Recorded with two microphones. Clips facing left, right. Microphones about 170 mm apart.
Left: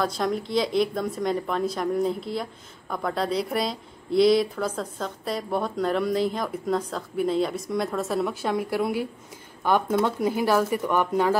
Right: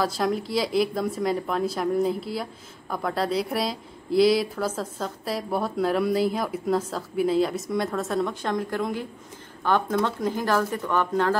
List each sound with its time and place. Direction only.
0.0 s a woman's voice: centre (ahead or behind)